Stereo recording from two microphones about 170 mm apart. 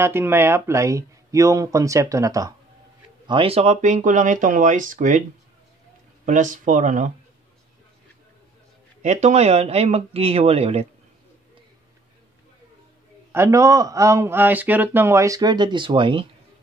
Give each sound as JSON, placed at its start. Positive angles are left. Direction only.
{"t": 0.0, "sound": "a man's voice", "side_deg": -15}
{"t": 3.3, "sound": "speech", "side_deg": -30}
{"t": 6.2, "sound": "speech", "side_deg": -50}
{"t": 9.0, "sound": "speech", "side_deg": -40}
{"t": 13.3, "sound": "a man's voice", "side_deg": -15}